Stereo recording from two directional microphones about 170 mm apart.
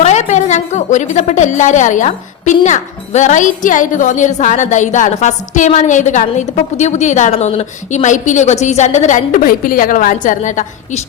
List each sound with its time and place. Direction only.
0.0 s a woman's voice: 45° left (ahead or behind)